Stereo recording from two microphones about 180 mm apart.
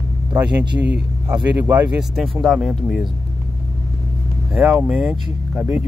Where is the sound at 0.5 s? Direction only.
70° right (ahead or behind).